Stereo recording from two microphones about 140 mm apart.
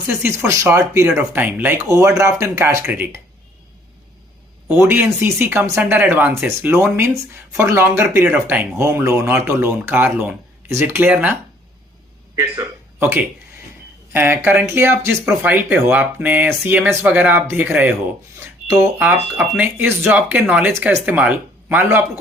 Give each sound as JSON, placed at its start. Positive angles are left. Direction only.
{"t": 0.2, "sound": "speech", "side_deg": -20}
{"t": 4.7, "sound": "speech", "side_deg": -15}
{"t": 12.4, "sound": "speech", "side_deg": -20}